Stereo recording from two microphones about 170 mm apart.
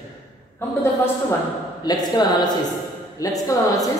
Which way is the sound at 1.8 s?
25° left (ahead or behind).